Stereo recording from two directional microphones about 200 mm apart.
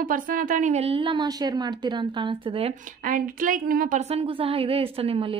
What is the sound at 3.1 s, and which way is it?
Speech, 40° right (ahead or behind).